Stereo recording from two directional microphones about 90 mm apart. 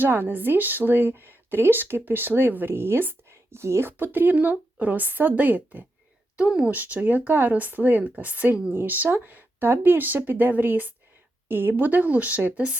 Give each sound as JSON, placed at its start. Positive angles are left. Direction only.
{"t": 0.0, "sound": "speech", "side_deg": -20}